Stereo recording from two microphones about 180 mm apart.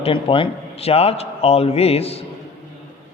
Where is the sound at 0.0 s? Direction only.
30° left (ahead or behind).